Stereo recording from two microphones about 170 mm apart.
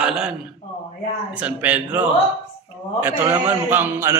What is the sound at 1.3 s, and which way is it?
A man's voice, 5° right (ahead or behind).